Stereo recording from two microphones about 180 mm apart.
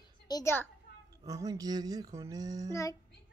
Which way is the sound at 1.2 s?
20° right (ahead or behind).